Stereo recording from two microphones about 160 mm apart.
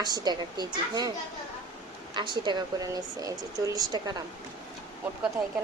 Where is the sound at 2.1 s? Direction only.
30° right (ahead or behind).